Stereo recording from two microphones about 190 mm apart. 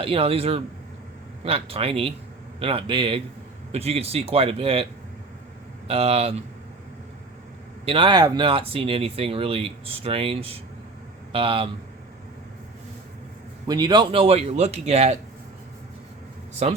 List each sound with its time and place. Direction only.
0.0 s speech: 30° right (ahead or behind)
5.9 s speech: 30° right (ahead or behind)
7.9 s speech: 25° right (ahead or behind)
13.7 s speech: 20° right (ahead or behind)
16.6 s speech: 35° right (ahead or behind)